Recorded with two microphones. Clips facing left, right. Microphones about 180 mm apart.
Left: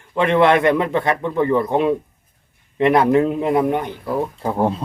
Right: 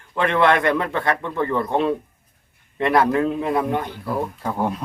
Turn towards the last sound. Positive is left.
turn(degrees=25)  # may be behind; listen again after turning